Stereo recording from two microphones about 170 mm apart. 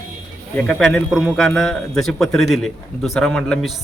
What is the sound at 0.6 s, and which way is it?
A man's voice, 5° left (ahead or behind).